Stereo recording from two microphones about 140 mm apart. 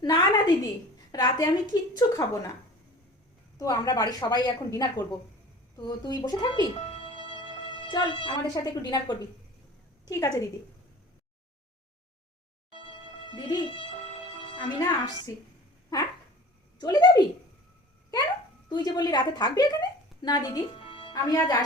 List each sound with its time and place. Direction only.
0.0 s a sound: 30° left (ahead or behind)
1.1 s a woman's voice: 30° left (ahead or behind)
3.6 s a woman's voice: 25° left (ahead or behind)
6.7 s music: 45° left (ahead or behind)
10.1 s a woman's voice: 25° left (ahead or behind)
12.7 s music: 40° left (ahead or behind)
14.4 s a woman's voice: 35° left (ahead or behind)
18.7 s a woman's voice: 30° left (ahead or behind)